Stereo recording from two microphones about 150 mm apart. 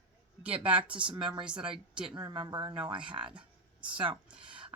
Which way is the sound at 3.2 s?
5° right (ahead or behind).